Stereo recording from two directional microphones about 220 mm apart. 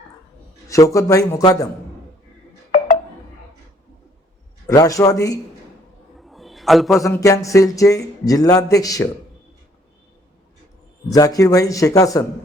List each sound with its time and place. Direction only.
0.7 s speech: 15° left (ahead or behind)
2.7 s a sound: 35° left (ahead or behind)
4.6 s speech: 15° left (ahead or behind)
6.1 s a sound: centre (ahead or behind)
7.0 s speech: 15° left (ahead or behind)
11.1 s speech: 15° left (ahead or behind)